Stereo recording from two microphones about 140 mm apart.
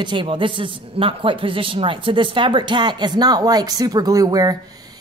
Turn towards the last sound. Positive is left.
turn(degrees=-25)  # may be behind; listen again after turning